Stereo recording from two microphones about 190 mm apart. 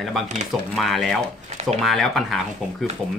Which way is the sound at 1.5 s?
35° right (ahead or behind).